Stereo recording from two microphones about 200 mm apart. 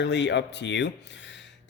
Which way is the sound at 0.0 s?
60° left (ahead or behind).